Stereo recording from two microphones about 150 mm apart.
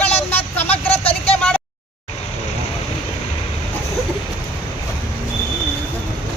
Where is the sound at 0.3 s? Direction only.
10° left (ahead or behind).